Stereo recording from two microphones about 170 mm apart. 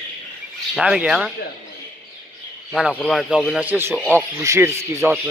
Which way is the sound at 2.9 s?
5° left (ahead or behind).